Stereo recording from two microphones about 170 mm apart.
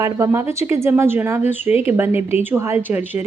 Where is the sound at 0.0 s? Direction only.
15° right (ahead or behind).